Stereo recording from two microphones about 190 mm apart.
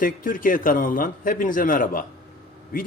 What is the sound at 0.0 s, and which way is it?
Speech, 45° left (ahead or behind).